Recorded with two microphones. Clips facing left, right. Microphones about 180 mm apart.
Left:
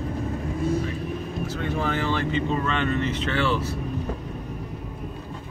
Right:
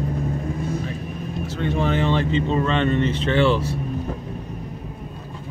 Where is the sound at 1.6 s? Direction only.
25° right (ahead or behind).